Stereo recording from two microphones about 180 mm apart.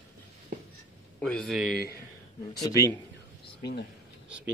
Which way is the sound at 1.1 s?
5° left (ahead or behind).